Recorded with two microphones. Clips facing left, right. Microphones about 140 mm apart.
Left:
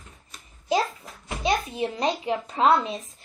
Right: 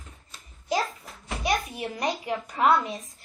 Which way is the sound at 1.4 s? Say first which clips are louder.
Left 3 dB; 25° left (ahead or behind).